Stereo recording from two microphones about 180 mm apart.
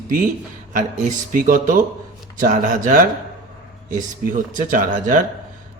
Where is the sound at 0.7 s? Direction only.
45° right (ahead or behind).